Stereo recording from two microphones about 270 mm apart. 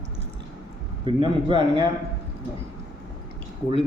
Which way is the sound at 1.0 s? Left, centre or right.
Centre.